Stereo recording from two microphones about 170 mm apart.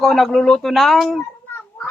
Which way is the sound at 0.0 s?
Centre (ahead or behind).